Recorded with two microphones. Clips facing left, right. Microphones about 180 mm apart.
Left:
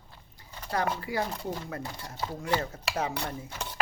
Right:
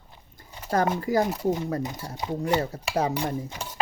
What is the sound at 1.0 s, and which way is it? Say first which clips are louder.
Speech: right 8 dB; 45° right (ahead or behind).